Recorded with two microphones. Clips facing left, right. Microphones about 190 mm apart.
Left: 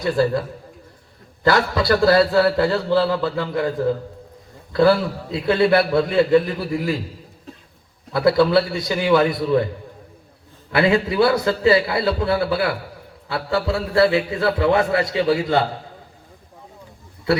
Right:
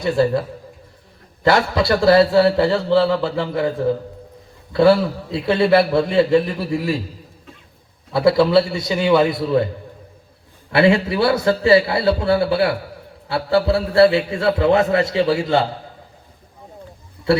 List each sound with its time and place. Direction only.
1.5 s a man's voice: 25° right (ahead or behind)
4.7 s a man's voice: 25° right (ahead or behind)
8.1 s a man's voice: 25° right (ahead or behind)
10.7 s a man's voice: 25° right (ahead or behind)